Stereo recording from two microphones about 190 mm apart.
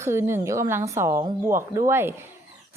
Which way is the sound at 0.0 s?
15° right (ahead or behind).